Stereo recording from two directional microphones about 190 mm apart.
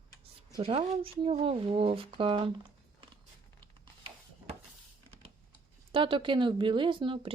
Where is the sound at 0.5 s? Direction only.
30° right (ahead or behind).